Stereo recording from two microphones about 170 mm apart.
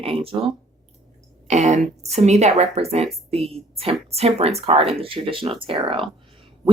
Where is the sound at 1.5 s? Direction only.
45° right (ahead or behind).